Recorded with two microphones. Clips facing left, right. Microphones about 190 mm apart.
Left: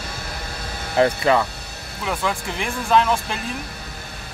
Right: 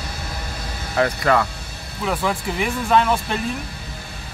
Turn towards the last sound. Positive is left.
turn(degrees=0)  # may be behind; listen again after turning